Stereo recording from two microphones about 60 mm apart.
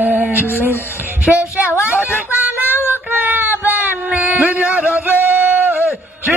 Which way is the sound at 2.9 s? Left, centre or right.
Right.